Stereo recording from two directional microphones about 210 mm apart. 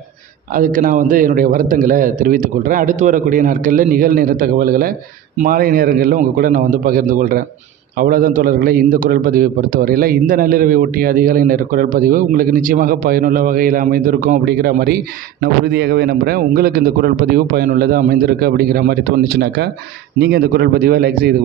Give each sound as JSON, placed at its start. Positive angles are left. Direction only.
{"t": 0.6, "sound": "a man's voice", "side_deg": -40}